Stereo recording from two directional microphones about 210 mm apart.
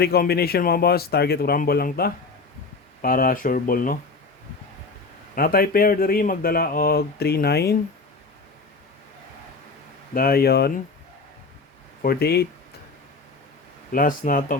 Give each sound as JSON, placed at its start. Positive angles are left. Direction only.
{"t": 0.0, "sound": "speech", "side_deg": 50}
{"t": 5.3, "sound": "speech", "side_deg": 45}
{"t": 10.2, "sound": "speech", "side_deg": 45}
{"t": 12.0, "sound": "speech", "side_deg": 50}
{"t": 13.9, "sound": "speech", "side_deg": 40}